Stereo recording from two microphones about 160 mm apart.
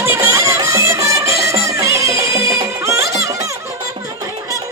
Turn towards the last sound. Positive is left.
turn(degrees=-20)  # may be behind; listen again after turning